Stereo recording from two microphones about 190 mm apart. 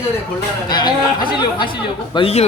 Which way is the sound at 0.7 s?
25° left (ahead or behind).